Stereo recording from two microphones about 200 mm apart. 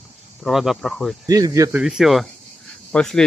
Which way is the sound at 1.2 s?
20° right (ahead or behind).